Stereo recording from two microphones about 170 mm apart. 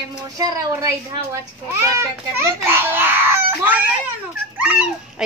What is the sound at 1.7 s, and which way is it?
A child's voice, 15° right (ahead or behind).